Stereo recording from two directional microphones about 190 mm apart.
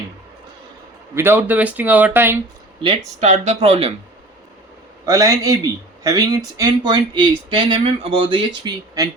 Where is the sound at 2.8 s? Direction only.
35° right (ahead or behind).